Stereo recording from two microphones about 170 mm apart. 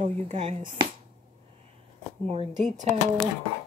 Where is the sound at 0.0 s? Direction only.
40° right (ahead or behind).